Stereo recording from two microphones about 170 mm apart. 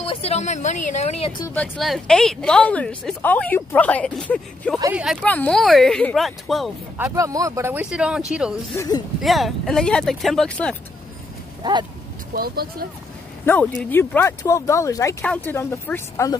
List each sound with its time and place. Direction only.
0.0 s a woman's voice: 35° left (ahead or behind)
1.5 s a woman's voice: 5° left (ahead or behind)
5.2 s speech: 10° left (ahead or behind)
7.0 s speech: 15° right (ahead or behind)
7.8 s speech: 5° right (ahead or behind)
8.7 s speech: 20° left (ahead or behind)
9.2 s speech: centre (ahead or behind)
12.4 s speech: 60° right (ahead or behind)
13.8 s a woman's voice: 10° left (ahead or behind)